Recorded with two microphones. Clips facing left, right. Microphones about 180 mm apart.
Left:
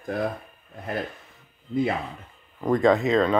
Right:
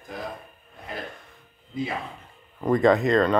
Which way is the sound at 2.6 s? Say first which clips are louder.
Even; centre (ahead or behind).